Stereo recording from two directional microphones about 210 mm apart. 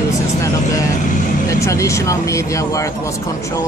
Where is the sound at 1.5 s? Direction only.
15° left (ahead or behind).